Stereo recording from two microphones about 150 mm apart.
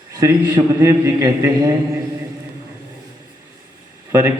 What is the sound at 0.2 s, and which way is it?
A man's voice, 25° right (ahead or behind).